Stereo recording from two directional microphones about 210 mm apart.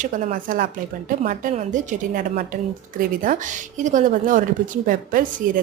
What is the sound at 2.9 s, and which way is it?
A woman's voice, 40° right (ahead or behind).